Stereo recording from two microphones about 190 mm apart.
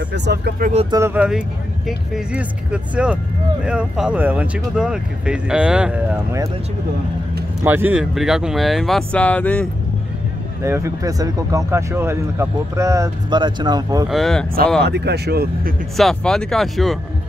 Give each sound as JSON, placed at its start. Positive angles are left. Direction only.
{"t": 0.1, "sound": "speech", "side_deg": -65}
{"t": 0.6, "sound": "speech", "side_deg": -40}
{"t": 0.9, "sound": "speech", "side_deg": -10}
{"t": 7.6, "sound": "speech", "side_deg": -10}
{"t": 10.6, "sound": "speech", "side_deg": -15}
{"t": 14.0, "sound": "speech", "side_deg": 0}
{"t": 14.9, "sound": "speech", "side_deg": -60}
{"t": 16.0, "sound": "speech", "side_deg": 0}